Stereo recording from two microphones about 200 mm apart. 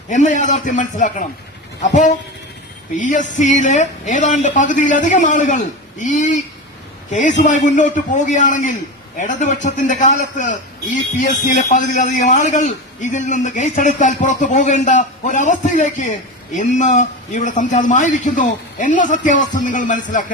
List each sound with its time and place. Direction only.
0.1 s a man's voice: 40° left (ahead or behind)